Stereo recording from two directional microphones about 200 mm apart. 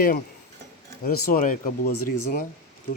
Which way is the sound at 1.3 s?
40° left (ahead or behind).